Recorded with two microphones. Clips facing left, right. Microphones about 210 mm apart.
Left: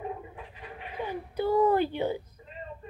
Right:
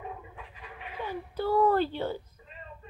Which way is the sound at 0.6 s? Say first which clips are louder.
Left 3 dB; 15° left (ahead or behind).